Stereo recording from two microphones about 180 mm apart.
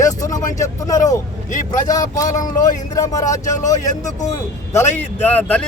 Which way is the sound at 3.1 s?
20° left (ahead or behind).